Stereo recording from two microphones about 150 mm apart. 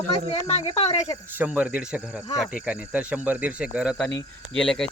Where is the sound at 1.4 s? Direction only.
10° right (ahead or behind).